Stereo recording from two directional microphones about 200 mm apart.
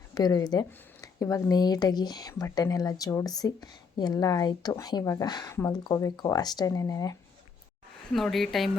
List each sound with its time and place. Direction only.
0.1 s speech: 20° left (ahead or behind)
8.1 s speech: centre (ahead or behind)